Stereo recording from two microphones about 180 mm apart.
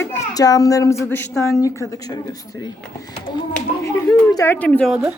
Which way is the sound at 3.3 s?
25° left (ahead or behind).